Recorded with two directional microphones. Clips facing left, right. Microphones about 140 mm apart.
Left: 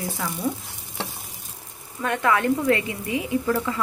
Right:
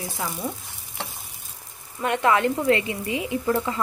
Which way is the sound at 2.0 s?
20° right (ahead or behind).